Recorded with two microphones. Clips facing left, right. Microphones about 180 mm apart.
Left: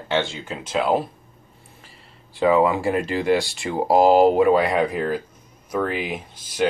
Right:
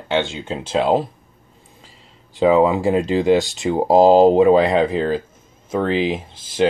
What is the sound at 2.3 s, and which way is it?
Speech, 20° right (ahead or behind).